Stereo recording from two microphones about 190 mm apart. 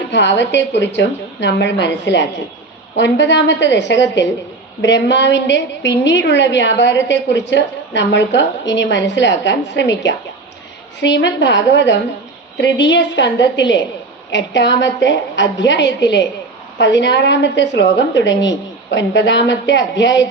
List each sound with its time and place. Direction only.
0.1 s a woman's voice: 70° left (ahead or behind)